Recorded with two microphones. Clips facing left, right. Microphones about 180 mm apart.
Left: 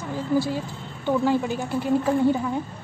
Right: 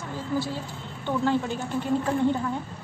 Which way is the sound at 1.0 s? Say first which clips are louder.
Left 3 dB; 10° left (ahead or behind).